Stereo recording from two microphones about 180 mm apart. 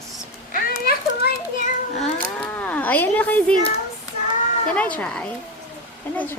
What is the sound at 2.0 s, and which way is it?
Livestock, 5° left (ahead or behind).